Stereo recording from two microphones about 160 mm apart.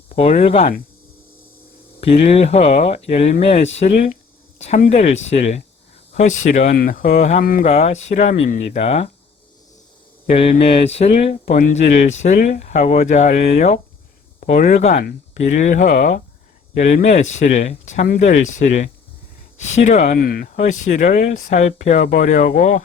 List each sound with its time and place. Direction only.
0.2 s speech: 40° left (ahead or behind)
2.0 s speech: 40° left (ahead or behind)
6.7 s speech: 60° left (ahead or behind)
8.8 s speech: 40° left (ahead or behind)
10.2 s speech: 40° left (ahead or behind)